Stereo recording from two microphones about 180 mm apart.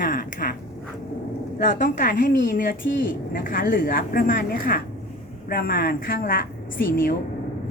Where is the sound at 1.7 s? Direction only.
50° left (ahead or behind).